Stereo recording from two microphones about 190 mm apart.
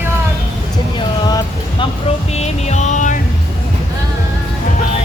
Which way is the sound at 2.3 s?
35° left (ahead or behind).